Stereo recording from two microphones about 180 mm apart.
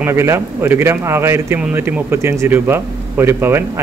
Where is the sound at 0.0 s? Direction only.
15° right (ahead or behind).